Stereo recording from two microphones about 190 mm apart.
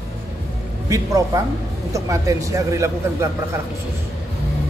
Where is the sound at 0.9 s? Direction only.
15° right (ahead or behind).